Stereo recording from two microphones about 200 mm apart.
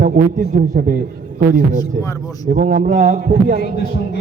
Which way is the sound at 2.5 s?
40° right (ahead or behind).